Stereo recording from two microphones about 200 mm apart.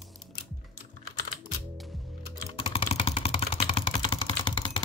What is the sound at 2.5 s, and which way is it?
Vehicle, 25° left (ahead or behind).